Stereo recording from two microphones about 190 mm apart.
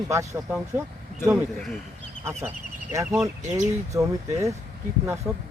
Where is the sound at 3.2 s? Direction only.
15° right (ahead or behind).